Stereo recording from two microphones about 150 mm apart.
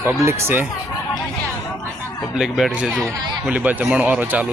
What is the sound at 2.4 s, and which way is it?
Speech, 5° right (ahead or behind).